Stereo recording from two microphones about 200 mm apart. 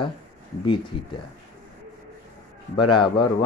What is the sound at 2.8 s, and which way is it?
Speech, 25° left (ahead or behind).